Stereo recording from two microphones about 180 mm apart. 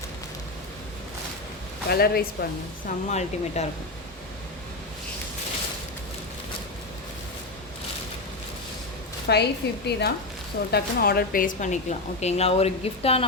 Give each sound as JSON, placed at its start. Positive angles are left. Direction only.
{"t": 1.9, "sound": "speech", "side_deg": 60}
{"t": 2.8, "sound": "a woman's voice", "side_deg": 40}
{"t": 9.2, "sound": "a woman's voice", "side_deg": 65}